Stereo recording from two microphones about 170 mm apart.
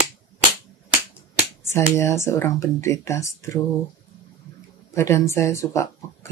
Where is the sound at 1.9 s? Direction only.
15° left (ahead or behind).